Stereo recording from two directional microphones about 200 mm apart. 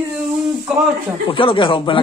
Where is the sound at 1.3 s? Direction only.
25° left (ahead or behind).